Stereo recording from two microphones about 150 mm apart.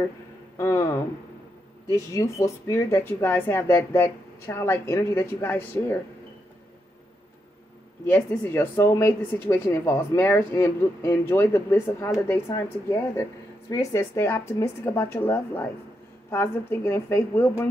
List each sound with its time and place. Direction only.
0.6 s a sound: 20° left (ahead or behind)
1.9 s speech: 20° left (ahead or behind)
8.1 s speech: 15° left (ahead or behind)